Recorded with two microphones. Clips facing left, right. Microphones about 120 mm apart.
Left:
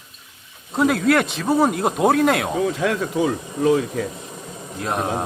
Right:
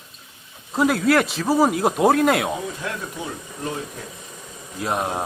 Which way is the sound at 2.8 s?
90° left.